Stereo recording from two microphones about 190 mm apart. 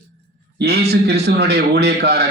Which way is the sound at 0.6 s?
60° right (ahead or behind).